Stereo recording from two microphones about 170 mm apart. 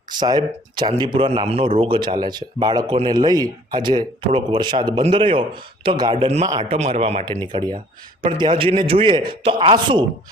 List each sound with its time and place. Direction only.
0.1 s a man's voice: 25° right (ahead or behind)
6.2 s speech: 40° right (ahead or behind)
7.4 s a man's voice: 25° right (ahead or behind)